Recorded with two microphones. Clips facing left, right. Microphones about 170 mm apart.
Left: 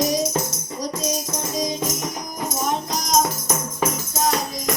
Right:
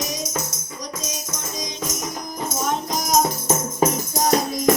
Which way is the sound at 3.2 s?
30° right (ahead or behind).